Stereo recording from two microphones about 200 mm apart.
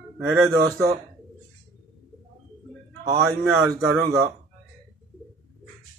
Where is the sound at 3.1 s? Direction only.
20° right (ahead or behind).